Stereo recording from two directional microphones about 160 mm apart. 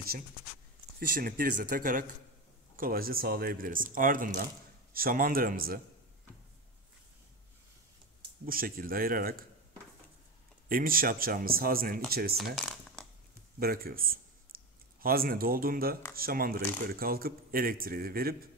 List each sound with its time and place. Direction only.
0.9 s speech: 60° right (ahead or behind)
8.5 s speech: 65° right (ahead or behind)
10.7 s speech: 65° right (ahead or behind)
12.5 s a sound: centre (ahead or behind)
13.6 s speech: 70° right (ahead or behind)